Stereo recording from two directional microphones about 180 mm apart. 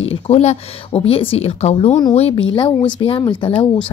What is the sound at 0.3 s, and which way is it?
A woman's voice, 35° left (ahead or behind).